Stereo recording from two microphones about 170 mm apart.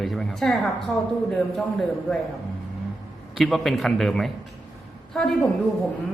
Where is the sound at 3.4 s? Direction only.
Centre (ahead or behind).